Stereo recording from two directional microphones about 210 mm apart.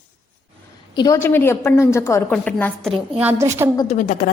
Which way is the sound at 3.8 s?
35° left (ahead or behind).